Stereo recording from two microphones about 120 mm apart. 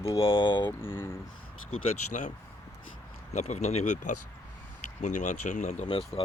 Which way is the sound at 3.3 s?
70° left (ahead or behind).